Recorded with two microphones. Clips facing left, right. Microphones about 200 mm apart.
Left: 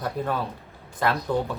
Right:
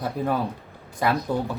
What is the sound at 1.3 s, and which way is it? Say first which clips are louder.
Speech: left 1 dB; 10° right (ahead or behind).